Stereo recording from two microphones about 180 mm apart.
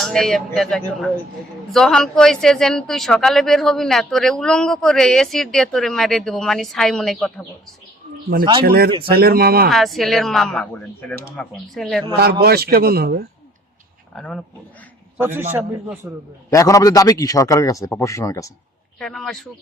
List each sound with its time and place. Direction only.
0.0 s speech: centre (ahead or behind)
8.6 s speech: 60° right (ahead or behind)
9.6 s speech: centre (ahead or behind)
12.2 s speech: 60° right (ahead or behind)
14.2 s speech: 5° left (ahead or behind)
16.0 s a man's voice: 10° right (ahead or behind)
16.5 s a man's voice: 15° left (ahead or behind)
18.9 s speech: centre (ahead or behind)